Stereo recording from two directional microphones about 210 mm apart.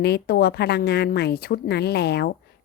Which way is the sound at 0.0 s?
50° left (ahead or behind).